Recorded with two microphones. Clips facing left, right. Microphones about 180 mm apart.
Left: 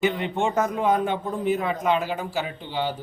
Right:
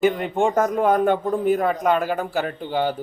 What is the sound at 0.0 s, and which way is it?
A man's voice, 50° right (ahead or behind).